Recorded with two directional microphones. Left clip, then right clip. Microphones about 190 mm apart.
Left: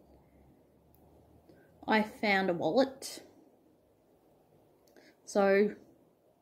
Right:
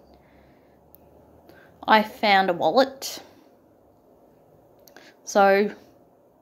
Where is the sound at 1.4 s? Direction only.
15° left (ahead or behind).